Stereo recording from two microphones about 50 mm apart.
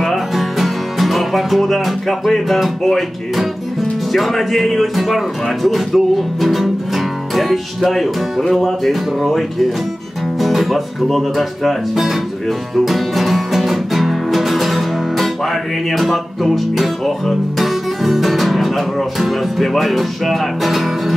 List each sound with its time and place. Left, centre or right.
0.0 s music: centre
4.1 s speech: centre